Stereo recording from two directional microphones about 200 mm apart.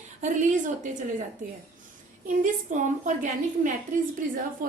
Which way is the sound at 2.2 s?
40° right (ahead or behind).